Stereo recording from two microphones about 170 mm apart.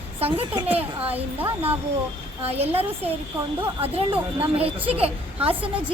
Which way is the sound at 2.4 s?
35° right (ahead or behind).